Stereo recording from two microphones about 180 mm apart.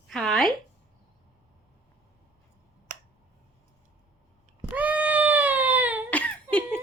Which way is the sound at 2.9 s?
45° right (ahead or behind).